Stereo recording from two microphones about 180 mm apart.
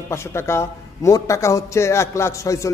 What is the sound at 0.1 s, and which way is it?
A man's voice, 15° left (ahead or behind).